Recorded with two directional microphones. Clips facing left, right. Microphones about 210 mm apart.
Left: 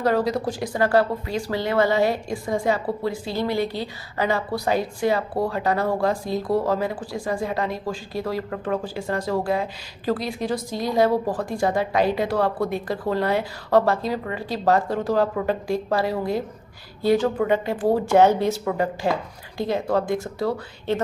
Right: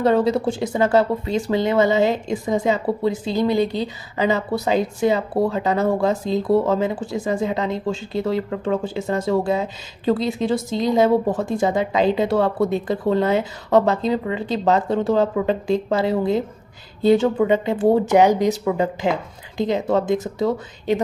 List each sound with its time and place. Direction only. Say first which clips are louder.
0.0 s speech: right 4 dB; 25° right (ahead or behind)